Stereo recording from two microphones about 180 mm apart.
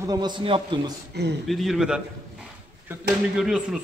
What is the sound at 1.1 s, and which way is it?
Speech, 70° right (ahead or behind).